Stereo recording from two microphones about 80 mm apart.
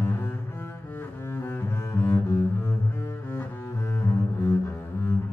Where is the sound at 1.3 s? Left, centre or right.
Left.